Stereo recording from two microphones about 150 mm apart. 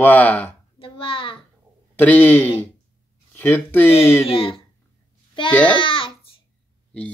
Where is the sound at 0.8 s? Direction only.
35° left (ahead or behind).